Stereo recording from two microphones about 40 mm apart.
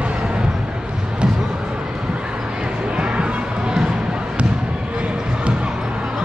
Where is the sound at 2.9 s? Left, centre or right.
Right.